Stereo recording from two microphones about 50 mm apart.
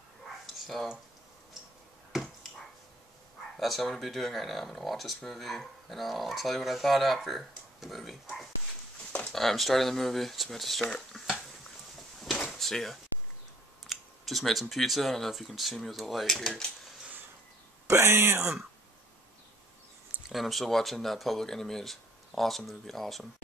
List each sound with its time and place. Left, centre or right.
0.5 s a sound: centre
3.5 s speech: centre
12.2 s drawer open or close: centre
12.5 s speech: centre
17.8 s speech: right
20.3 s speech: centre